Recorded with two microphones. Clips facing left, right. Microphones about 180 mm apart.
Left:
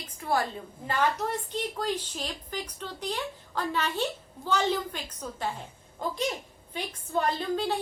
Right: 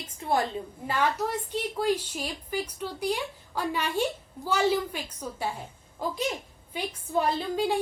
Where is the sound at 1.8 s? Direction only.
10° right (ahead or behind).